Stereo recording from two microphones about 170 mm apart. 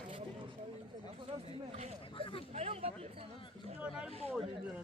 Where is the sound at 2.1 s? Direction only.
30° left (ahead or behind).